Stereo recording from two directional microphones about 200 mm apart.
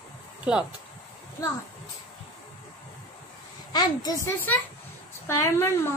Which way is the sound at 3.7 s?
20° left (ahead or behind).